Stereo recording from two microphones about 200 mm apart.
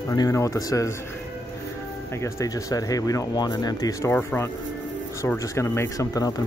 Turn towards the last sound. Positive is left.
turn(degrees=15)  # may be behind; listen again after turning